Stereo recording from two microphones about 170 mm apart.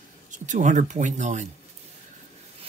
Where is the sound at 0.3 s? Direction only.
45° right (ahead or behind).